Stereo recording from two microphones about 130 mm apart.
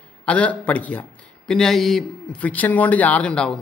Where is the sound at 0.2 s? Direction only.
10° left (ahead or behind).